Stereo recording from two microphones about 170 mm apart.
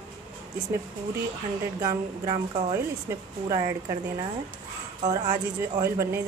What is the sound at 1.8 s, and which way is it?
Speech, 20° right (ahead or behind).